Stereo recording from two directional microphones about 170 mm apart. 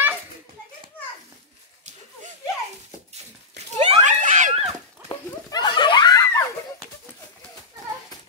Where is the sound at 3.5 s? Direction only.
35° right (ahead or behind).